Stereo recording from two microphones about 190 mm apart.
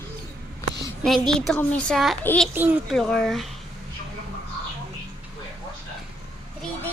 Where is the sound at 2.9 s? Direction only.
Centre (ahead or behind).